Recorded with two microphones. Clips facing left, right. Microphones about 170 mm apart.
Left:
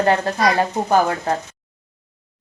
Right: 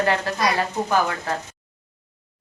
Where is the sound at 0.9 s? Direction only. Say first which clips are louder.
Left 6 dB; 30° left (ahead or behind).